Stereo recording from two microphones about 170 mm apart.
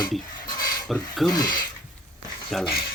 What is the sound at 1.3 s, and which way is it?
Speech, 20° left (ahead or behind).